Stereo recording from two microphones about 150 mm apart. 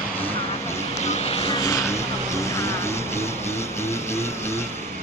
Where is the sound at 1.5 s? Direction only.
20° left (ahead or behind).